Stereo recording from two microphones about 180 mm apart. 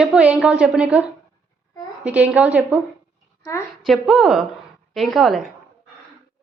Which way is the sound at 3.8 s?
Centre (ahead or behind).